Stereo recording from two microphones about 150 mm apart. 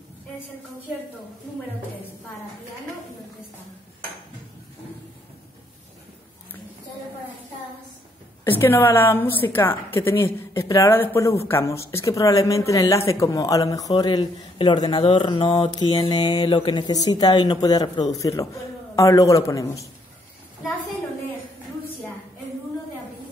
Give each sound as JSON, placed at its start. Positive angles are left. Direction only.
{"t": 8.5, "sound": "a woman's voice", "side_deg": 15}